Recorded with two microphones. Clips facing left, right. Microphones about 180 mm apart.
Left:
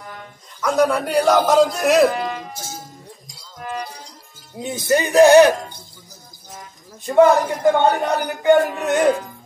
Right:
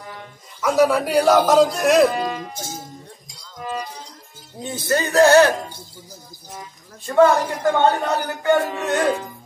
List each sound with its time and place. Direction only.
0.6 s a man's voice: 5° right (ahead or behind)
4.6 s a man's voice: 15° left (ahead or behind)
7.1 s a man's voice: 20° left (ahead or behind)